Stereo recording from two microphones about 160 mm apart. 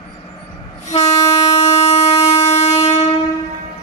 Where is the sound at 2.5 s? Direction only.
45° left (ahead or behind).